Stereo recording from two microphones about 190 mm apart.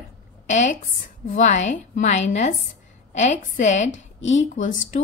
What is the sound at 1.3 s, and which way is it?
A woman's voice, 40° left (ahead or behind).